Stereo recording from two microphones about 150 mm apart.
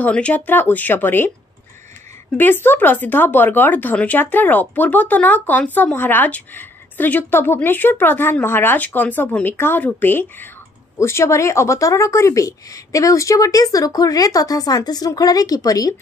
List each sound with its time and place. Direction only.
0.0 s speech: 10° left (ahead or behind)
2.3 s a woman's voice: 15° left (ahead or behind)